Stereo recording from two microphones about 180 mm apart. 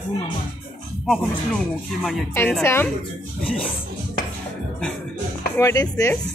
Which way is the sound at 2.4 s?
10° left (ahead or behind).